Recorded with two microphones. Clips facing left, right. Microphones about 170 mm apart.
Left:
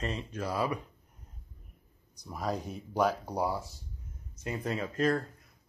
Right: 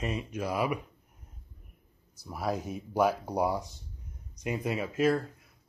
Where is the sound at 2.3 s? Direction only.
10° right (ahead or behind).